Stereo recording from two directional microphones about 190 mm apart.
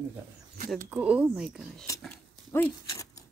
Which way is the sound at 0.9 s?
5° right (ahead or behind).